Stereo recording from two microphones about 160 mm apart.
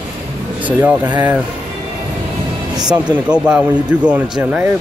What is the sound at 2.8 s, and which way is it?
Speech, 25° right (ahead or behind).